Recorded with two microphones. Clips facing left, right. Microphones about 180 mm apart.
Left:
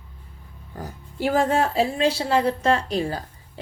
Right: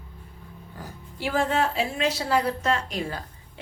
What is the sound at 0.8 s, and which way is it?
A woman's voice, 45° left (ahead or behind).